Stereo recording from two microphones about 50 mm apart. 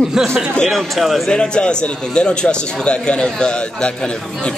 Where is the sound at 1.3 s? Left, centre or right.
Centre.